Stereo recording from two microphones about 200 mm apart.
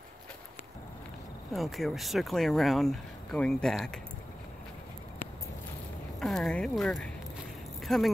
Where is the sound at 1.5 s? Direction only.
Centre (ahead or behind).